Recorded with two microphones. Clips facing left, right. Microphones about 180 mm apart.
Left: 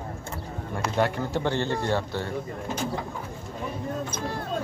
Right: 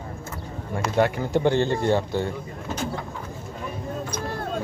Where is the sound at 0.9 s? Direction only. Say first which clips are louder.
Right 4 dB; 15° right (ahead or behind).